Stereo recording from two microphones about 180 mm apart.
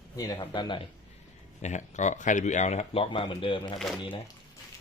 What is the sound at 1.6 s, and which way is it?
Speech, 40° left (ahead or behind).